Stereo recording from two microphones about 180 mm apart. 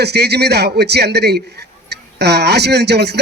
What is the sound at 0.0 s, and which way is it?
A man's voice, 65° right (ahead or behind).